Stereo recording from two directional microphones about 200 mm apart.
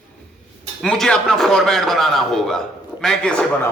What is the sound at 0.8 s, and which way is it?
A man's voice, centre (ahead or behind).